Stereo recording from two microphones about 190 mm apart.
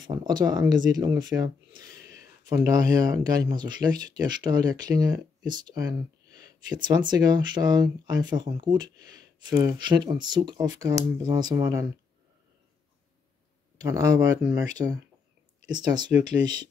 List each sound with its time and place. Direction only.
0.0 s speech: 20° right (ahead or behind)
13.7 s speech: 20° right (ahead or behind)
14.8 s speech: 30° right (ahead or behind)